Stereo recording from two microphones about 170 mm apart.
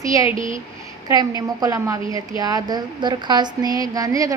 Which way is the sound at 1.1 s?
20° right (ahead or behind).